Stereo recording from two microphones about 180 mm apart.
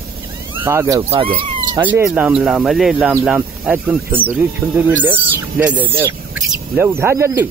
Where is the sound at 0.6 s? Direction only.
15° right (ahead or behind).